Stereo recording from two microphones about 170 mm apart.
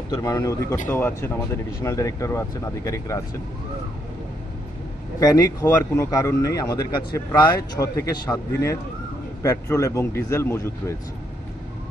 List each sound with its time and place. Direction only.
0.2 s a man's voice: 20° left (ahead or behind)
5.2 s a man's voice: 20° left (ahead or behind)